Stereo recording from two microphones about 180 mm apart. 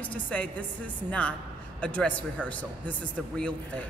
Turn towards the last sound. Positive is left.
turn(degrees=5)  # may be behind; listen again after turning